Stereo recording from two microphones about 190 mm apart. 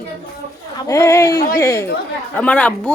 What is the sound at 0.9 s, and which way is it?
A woman's voice, 15° left (ahead or behind).